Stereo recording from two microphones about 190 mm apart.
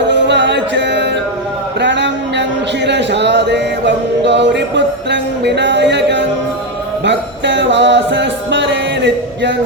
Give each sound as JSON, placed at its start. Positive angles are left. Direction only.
{"t": 0.1, "sound": "music", "side_deg": -70}
{"t": 1.8, "sound": "a sound", "side_deg": -65}
{"t": 7.0, "sound": "music", "side_deg": -65}